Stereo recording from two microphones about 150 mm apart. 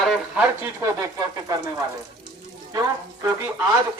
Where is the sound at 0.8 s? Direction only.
20° right (ahead or behind).